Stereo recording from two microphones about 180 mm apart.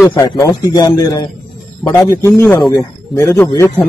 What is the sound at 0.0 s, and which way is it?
A man's voice, 20° left (ahead or behind).